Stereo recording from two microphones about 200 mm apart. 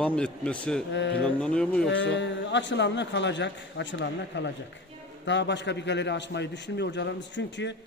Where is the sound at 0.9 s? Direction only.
65° left (ahead or behind).